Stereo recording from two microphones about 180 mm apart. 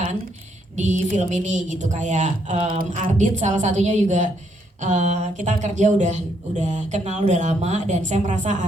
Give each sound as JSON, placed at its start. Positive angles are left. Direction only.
{"t": 0.8, "sound": "speech", "side_deg": -40}